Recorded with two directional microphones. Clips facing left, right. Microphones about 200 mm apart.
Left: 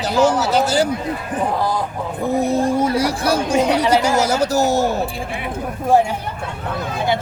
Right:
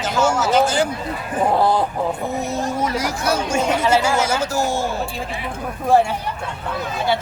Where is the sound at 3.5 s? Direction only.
15° left (ahead or behind).